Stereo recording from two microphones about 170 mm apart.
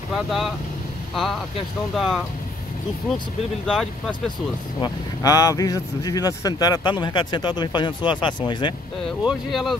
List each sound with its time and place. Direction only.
0.1 s speech: centre (ahead or behind)
2.0 s speech: centre (ahead or behind)
3.6 s speech: 5° left (ahead or behind)
4.8 s speech: 20° left (ahead or behind)
9.2 s speech: centre (ahead or behind)